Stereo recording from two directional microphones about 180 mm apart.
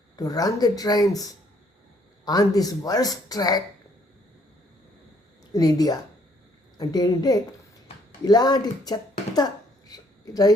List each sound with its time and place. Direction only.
0.2 s speech: 20° left (ahead or behind)
5.5 s speech: 20° left (ahead or behind)